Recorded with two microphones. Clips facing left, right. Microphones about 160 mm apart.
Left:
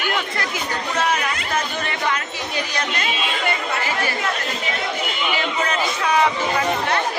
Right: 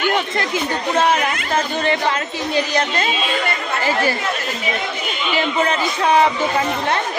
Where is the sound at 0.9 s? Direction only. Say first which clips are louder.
Right 5 dB; 30° right (ahead or behind).